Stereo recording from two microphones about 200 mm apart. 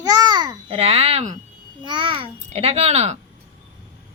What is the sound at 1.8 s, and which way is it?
A child's voice, 25° right (ahead or behind).